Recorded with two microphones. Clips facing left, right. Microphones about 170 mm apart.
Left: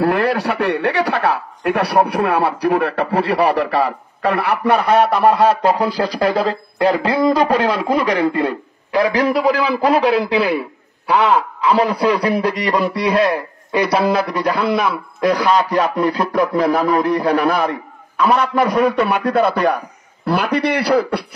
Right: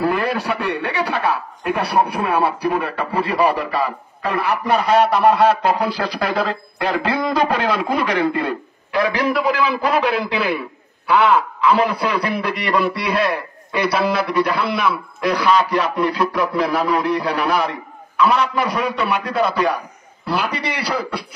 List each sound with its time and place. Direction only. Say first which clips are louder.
0.0 s a man's voice: left 4 dB; 70° left (ahead or behind)